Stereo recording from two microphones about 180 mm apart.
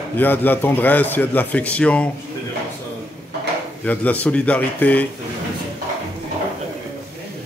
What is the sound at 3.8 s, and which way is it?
Speech, 10° left (ahead or behind).